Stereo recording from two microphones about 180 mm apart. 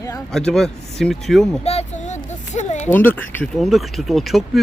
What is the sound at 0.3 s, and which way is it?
Speech, centre (ahead or behind).